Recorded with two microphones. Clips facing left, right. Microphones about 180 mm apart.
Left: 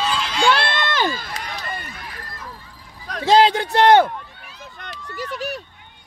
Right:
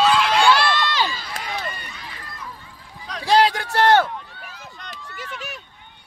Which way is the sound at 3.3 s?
25° left (ahead or behind).